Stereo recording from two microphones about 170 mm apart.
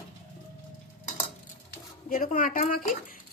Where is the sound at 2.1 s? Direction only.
55° left (ahead or behind).